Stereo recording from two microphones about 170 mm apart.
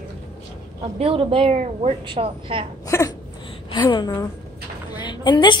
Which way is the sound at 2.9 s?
15° left (ahead or behind).